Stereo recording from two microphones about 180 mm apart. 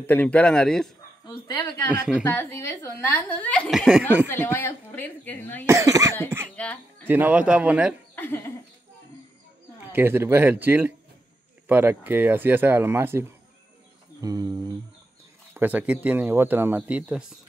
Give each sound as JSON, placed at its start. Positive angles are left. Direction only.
{"t": 0.0, "sound": "a man's voice", "side_deg": 10}
{"t": 1.2, "sound": "speech", "side_deg": 25}
{"t": 2.2, "sound": "a woman's voice", "side_deg": 15}
{"t": 4.3, "sound": "a woman's voice", "side_deg": 15}
{"t": 5.7, "sound": "speech", "side_deg": -15}
{"t": 6.5, "sound": "speech", "side_deg": 5}
{"t": 7.1, "sound": "speech", "side_deg": -10}
{"t": 8.2, "sound": "a sound", "side_deg": 10}
{"t": 9.9, "sound": "speech", "side_deg": -15}
{"t": 14.2, "sound": "a sound", "side_deg": -20}
{"t": 15.5, "sound": "speech", "side_deg": -10}